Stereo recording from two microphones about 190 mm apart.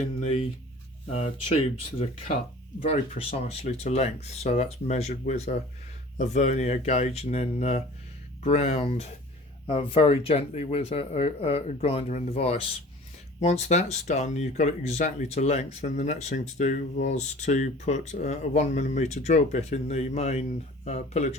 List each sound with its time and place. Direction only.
1.1 s speech: 35° left (ahead or behind)
2.8 s speech: 30° left (ahead or behind)